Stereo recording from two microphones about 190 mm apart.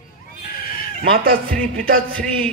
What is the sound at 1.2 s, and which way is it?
Speech, 50° right (ahead or behind).